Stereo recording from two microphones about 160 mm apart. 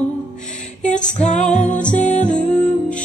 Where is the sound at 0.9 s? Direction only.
45° left (ahead or behind).